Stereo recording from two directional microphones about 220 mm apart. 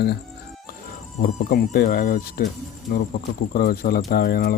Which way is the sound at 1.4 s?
45° left (ahead or behind).